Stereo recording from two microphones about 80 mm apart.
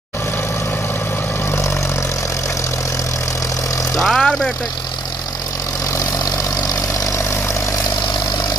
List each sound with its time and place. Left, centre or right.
3.9 s vehicle: centre
6.5 s vehicle: left